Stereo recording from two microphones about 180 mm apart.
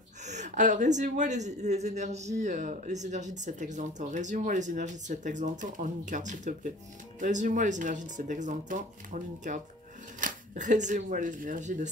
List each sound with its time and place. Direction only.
0.2 s speech: 40° right (ahead or behind)